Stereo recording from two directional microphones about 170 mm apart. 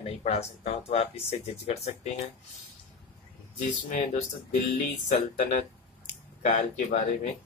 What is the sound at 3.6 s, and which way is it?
Speech, 50° left (ahead or behind).